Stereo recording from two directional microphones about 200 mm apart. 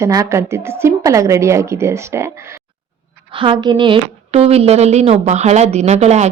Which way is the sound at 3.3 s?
25° right (ahead or behind).